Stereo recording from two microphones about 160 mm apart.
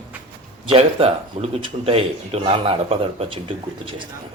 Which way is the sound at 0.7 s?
35° right (ahead or behind).